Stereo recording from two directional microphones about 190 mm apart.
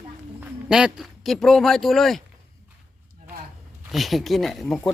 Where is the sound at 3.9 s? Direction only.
Centre (ahead or behind).